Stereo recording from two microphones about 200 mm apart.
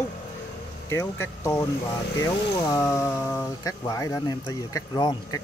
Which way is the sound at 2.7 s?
15° left (ahead or behind).